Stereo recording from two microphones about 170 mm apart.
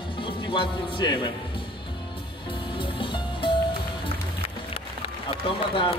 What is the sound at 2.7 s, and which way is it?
Music, 30° left (ahead or behind).